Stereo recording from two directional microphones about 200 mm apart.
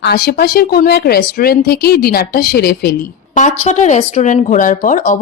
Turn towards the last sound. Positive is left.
turn(degrees=40)  # may be behind; listen again after turning